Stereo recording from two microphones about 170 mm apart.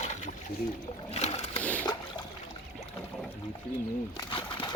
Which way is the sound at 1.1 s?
40° left (ahead or behind).